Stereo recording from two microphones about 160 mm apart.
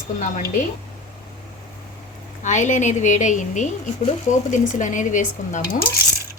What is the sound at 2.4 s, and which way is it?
A woman's voice, 50° left (ahead or behind).